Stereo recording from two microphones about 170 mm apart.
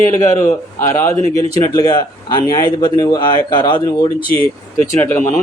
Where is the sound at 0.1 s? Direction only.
15° left (ahead or behind).